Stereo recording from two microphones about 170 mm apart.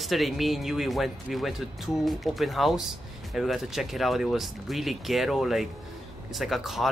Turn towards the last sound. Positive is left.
turn(degrees=0)  # may be behind; listen again after turning